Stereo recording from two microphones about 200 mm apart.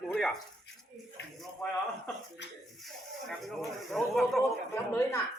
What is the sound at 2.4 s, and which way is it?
Speech, 60° left (ahead or behind).